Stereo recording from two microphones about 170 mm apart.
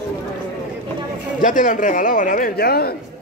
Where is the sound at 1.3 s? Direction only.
50° left (ahead or behind); by 2.9 s 65° left (ahead or behind).